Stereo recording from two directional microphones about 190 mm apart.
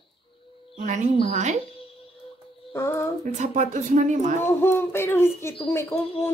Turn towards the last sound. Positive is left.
turn(degrees=10)  # may be behind; listen again after turning